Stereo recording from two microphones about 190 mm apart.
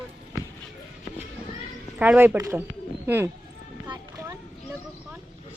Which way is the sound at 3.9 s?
15° right (ahead or behind).